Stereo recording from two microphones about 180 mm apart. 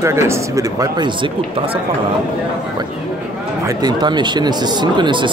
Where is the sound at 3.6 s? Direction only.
25° right (ahead or behind).